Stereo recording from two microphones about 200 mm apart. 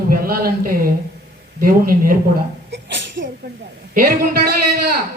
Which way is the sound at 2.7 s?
65° right (ahead or behind).